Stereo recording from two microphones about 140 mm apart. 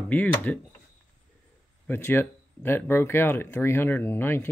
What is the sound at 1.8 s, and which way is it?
Speech, 15° left (ahead or behind).